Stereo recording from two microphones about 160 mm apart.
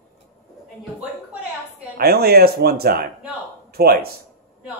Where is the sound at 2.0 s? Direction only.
75° right (ahead or behind).